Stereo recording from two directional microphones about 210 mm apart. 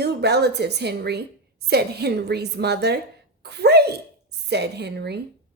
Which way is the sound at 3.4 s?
50° right (ahead or behind).